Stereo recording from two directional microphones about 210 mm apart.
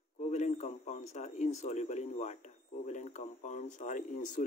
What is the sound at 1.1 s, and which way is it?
Speech, 35° left (ahead or behind).